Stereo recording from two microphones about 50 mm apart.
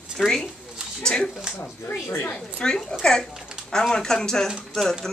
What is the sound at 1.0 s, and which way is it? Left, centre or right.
Speech, centre.